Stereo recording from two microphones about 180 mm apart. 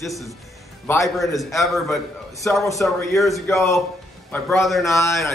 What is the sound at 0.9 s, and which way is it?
Speech, 20° left (ahead or behind).